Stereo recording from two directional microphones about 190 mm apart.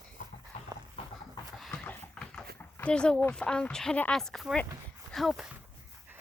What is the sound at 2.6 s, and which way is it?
Speech, 10° left (ahead or behind).